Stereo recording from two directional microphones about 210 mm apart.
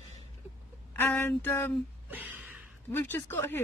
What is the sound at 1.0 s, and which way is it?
Speech, 10° left (ahead or behind).